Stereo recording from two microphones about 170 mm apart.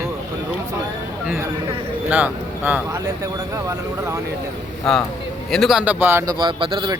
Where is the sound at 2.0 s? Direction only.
10° right (ahead or behind).